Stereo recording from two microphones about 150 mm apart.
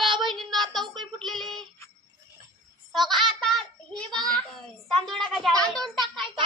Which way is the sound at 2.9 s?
Centre (ahead or behind).